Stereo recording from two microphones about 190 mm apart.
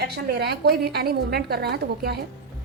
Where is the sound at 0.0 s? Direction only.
55° right (ahead or behind).